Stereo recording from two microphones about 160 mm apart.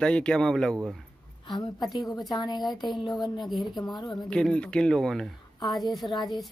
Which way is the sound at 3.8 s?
25° left (ahead or behind).